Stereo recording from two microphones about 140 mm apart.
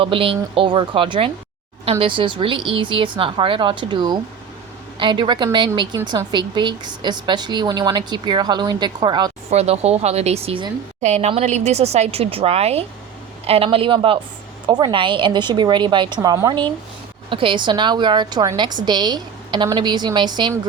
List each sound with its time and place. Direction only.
0.0 s a woman's voice: 40° right (ahead or behind)
9.5 s a woman's voice: 50° right (ahead or behind); by 20.5 s 35° right (ahead or behind)